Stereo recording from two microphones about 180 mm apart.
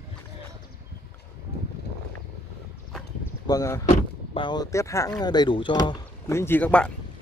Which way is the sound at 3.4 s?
20° left (ahead or behind).